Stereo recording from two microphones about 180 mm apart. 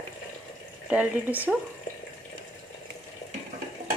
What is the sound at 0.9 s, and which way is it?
Speech, 10° right (ahead or behind).